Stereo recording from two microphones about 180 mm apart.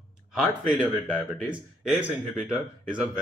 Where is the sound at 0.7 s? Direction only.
5° right (ahead or behind).